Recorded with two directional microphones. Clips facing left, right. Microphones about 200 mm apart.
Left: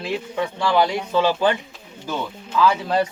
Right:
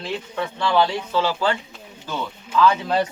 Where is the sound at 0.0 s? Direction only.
10° left (ahead or behind).